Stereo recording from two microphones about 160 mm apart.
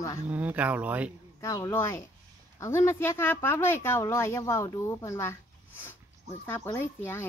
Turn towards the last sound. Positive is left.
turn(degrees=15)  # may be behind; listen again after turning